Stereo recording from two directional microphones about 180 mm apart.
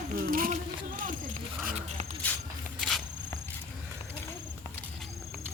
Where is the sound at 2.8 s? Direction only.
Centre (ahead or behind).